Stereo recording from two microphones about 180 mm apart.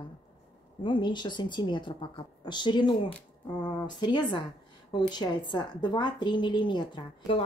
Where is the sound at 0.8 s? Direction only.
25° left (ahead or behind).